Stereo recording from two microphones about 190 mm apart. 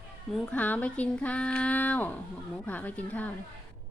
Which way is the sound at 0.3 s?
5° left (ahead or behind).